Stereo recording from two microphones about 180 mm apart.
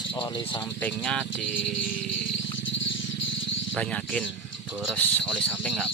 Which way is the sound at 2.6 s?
90° left.